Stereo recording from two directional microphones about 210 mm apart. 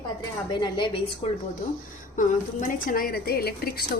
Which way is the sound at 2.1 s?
40° left (ahead or behind).